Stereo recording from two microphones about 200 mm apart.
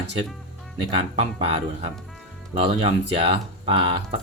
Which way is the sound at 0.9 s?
30° right (ahead or behind).